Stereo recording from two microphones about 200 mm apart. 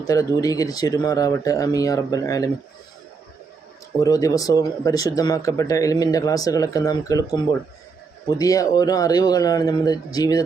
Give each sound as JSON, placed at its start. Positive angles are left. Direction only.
{"t": 0.0, "sound": "speech", "side_deg": 15}
{"t": 4.0, "sound": "speech", "side_deg": 15}